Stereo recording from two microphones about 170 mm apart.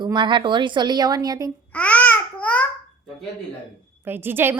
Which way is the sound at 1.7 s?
10° left (ahead or behind).